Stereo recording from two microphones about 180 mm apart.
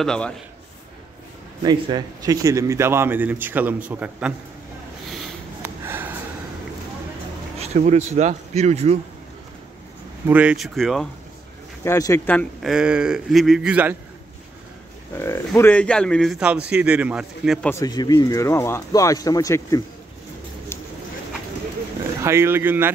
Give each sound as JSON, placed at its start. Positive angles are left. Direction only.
{"t": 0.0, "sound": "speech", "side_deg": 5}
{"t": 1.6, "sound": "a man's voice", "side_deg": -25}
{"t": 5.6, "sound": "snort", "side_deg": -10}
{"t": 7.5, "sound": "speech", "side_deg": -35}
{"t": 10.2, "sound": "speech", "side_deg": -10}
{"t": 11.8, "sound": "speech", "side_deg": 15}
{"t": 12.6, "sound": "speech", "side_deg": -5}
{"t": 15.1, "sound": "speech", "side_deg": 15}
{"t": 17.6, "sound": "speech", "side_deg": 15}
{"t": 22.2, "sound": "a man's voice", "side_deg": -15}